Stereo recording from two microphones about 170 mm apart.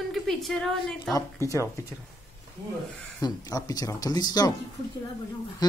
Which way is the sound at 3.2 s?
20° left (ahead or behind).